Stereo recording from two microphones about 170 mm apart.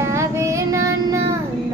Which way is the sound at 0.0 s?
15° right (ahead or behind).